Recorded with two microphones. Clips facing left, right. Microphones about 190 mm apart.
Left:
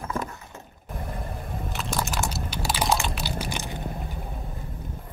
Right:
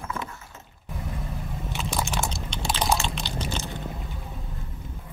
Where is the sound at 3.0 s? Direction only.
10° left (ahead or behind).